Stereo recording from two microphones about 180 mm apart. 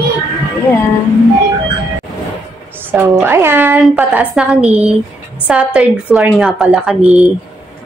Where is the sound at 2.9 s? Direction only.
10° right (ahead or behind).